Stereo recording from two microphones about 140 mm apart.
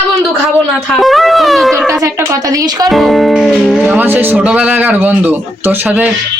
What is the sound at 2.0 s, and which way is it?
Speech, 25° right (ahead or behind).